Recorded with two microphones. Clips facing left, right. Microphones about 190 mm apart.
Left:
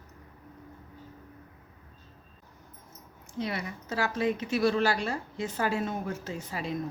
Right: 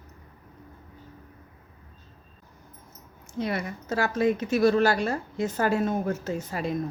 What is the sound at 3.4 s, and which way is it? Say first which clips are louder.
A woman's voice: right 4 dB; 50° right (ahead or behind).